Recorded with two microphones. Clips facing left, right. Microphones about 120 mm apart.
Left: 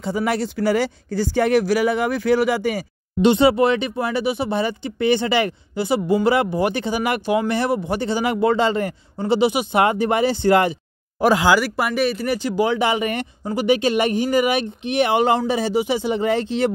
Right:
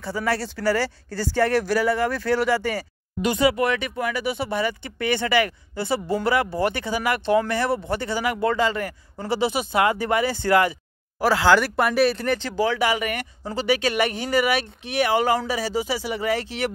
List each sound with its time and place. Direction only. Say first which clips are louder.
0.0 s speech: left 4 dB; 20° left (ahead or behind)
3.2 s speech: left 6 dB; 25° left (ahead or behind)
11.5 s speech: even; 5° left (ahead or behind); by 16.7 s 25° left (ahead or behind)